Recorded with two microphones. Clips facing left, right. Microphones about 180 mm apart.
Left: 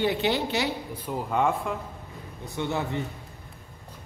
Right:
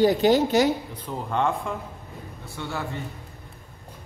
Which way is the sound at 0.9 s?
10° left (ahead or behind).